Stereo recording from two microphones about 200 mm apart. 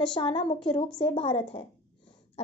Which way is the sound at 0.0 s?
25° left (ahead or behind).